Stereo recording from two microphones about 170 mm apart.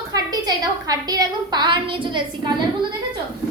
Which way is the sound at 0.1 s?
20° right (ahead or behind).